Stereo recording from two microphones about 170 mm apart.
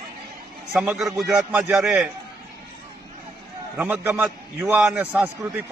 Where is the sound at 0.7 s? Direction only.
5° right (ahead or behind).